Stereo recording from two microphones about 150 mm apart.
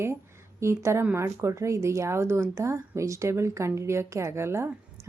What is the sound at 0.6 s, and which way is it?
Speech, 20° right (ahead or behind).